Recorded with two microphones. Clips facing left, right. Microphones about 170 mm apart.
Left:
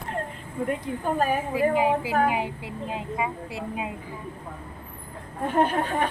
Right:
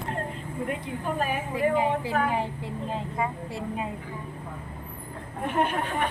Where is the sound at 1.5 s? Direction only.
10° left (ahead or behind).